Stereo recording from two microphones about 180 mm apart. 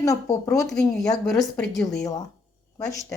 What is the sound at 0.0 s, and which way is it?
Speech, 20° left (ahead or behind).